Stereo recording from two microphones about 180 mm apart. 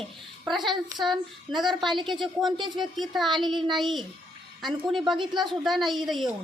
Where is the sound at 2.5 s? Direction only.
25° right (ahead or behind).